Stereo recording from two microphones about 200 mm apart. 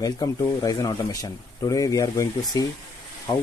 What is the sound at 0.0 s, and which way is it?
Speech, 15° left (ahead or behind).